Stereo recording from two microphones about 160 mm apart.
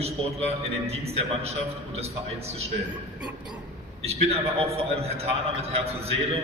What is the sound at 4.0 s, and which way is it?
A man's voice, 40° right (ahead or behind).